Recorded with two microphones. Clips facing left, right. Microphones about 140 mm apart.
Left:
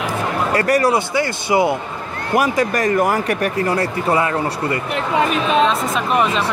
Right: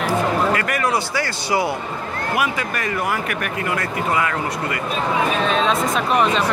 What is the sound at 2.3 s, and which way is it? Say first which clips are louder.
Speech: left 8 dB; 40° left (ahead or behind).